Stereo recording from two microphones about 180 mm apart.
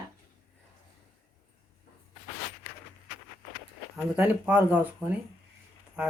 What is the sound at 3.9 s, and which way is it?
Speech, 5° right (ahead or behind).